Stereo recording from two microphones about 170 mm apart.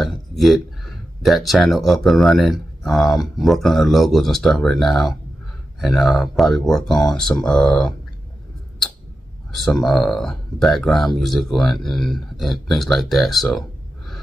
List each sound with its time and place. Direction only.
0.0 s a sound: centre (ahead or behind)
1.2 s speech: centre (ahead or behind)
9.5 s speech: centre (ahead or behind)